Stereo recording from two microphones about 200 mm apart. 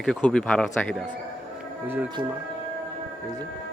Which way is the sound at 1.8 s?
10° right (ahead or behind).